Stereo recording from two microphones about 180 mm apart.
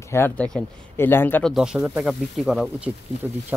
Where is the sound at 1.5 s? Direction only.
5° right (ahead or behind).